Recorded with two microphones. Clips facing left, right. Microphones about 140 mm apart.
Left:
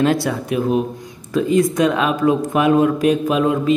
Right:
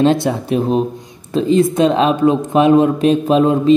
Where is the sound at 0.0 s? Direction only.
25° right (ahead or behind).